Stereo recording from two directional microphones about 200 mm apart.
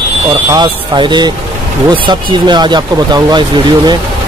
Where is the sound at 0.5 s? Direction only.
20° right (ahead or behind).